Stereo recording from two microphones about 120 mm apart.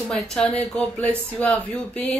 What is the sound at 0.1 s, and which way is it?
Speech, 10° left (ahead or behind).